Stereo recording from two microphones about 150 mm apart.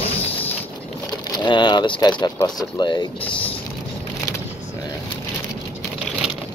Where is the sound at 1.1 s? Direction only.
30° left (ahead or behind).